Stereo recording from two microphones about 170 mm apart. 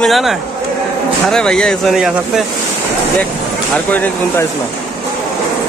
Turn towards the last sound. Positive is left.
turn(degrees=10)  # may be behind; listen again after turning